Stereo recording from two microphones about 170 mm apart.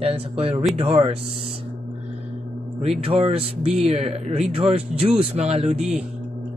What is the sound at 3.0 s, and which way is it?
Speech, 35° right (ahead or behind).